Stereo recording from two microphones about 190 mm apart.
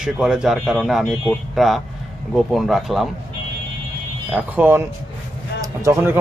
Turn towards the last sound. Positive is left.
turn(degrees=-15)  # may be behind; listen again after turning